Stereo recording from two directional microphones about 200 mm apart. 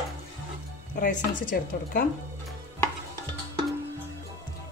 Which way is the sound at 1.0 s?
40° left (ahead or behind).